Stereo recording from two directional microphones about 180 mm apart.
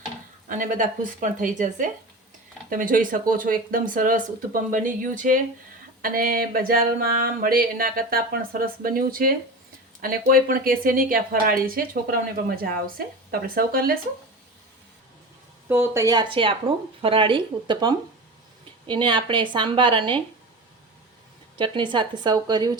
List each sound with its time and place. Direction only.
0.4 s a sound: 45° right (ahead or behind)
15.7 s speech: 15° right (ahead or behind)
21.6 s speech: 25° right (ahead or behind)